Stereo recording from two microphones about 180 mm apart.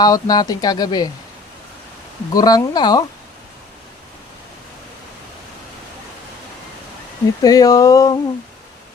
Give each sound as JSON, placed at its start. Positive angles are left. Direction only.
{"t": 0.0, "sound": "speech", "side_deg": 20}
{"t": 2.3, "sound": "speech", "side_deg": 20}
{"t": 7.4, "sound": "speech", "side_deg": 20}